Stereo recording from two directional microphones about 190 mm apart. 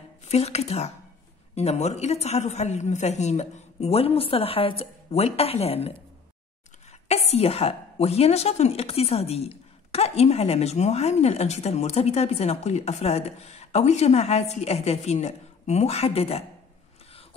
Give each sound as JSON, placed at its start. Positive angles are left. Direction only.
{"t": 0.3, "sound": "a woman's voice", "side_deg": 35}
{"t": 7.1, "sound": "a woman's voice", "side_deg": 35}